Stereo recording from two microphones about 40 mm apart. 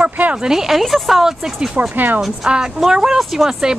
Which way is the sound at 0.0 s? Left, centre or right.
Right.